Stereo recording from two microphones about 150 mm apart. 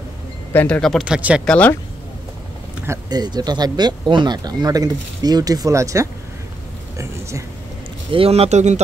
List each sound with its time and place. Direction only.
0.5 s speech: 10° left (ahead or behind); by 1.4 s 5° right (ahead or behind)
1.4 s speech: 10° left (ahead or behind)
2.9 s speech: 25° right (ahead or behind)
8.1 s speech: 40° right (ahead or behind)